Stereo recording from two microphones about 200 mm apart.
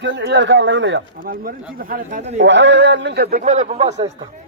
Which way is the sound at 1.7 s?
45° right (ahead or behind).